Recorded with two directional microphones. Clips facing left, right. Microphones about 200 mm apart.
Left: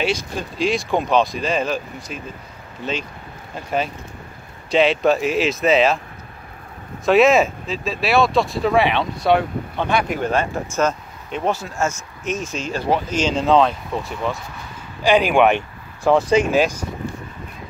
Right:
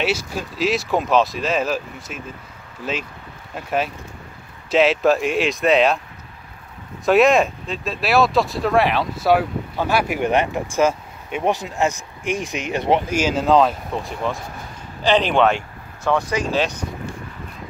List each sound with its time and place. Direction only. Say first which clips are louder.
0.0 s speech: even; 5° right (ahead or behind)
7.1 s speech: left 1 dB; centre (ahead or behind); by 13.0 s 20° right (ahead or behind)
13.1 s speech: left 2 dB; 5° right (ahead or behind); by 15.6 s 15° left (ahead or behind)
16.1 s speech: left 5 dB; 25° left (ahead or behind)
16.5 s speech: left 4 dB; 10° left (ahead or behind)